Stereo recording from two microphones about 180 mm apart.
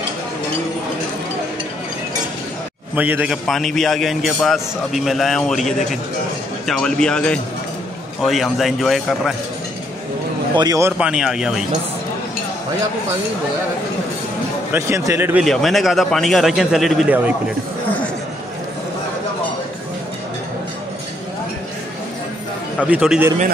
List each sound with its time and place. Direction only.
3.0 s a man's voice: 10° right (ahead or behind)
10.5 s a man's voice: 20° right (ahead or behind); by 11.6 s 5° right (ahead or behind)
14.7 s speech: 15° right (ahead or behind)
15.4 s a man's voice: centre (ahead or behind)
22.8 s speech: 5° right (ahead or behind)